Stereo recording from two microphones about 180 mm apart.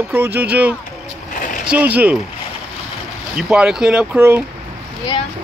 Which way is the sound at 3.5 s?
5° right (ahead or behind).